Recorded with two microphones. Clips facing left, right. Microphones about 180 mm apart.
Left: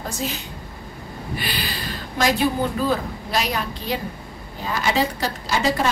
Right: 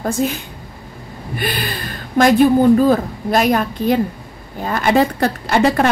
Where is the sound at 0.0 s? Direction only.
55° right (ahead or behind).